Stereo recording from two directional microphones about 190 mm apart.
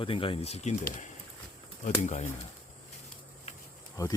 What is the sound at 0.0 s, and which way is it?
Speech, 30° left (ahead or behind).